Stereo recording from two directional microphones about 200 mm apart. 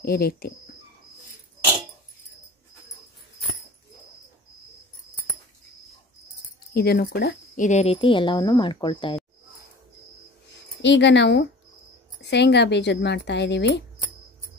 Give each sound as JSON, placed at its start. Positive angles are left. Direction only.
{"t": 0.0, "sound": "speech", "side_deg": 50}
{"t": 6.7, "sound": "speech", "side_deg": 50}
{"t": 7.6, "sound": "a woman's voice", "side_deg": 35}
{"t": 10.8, "sound": "speech", "side_deg": 60}